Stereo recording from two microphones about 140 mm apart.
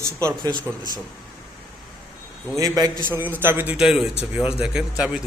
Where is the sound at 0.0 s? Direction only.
20° right (ahead or behind).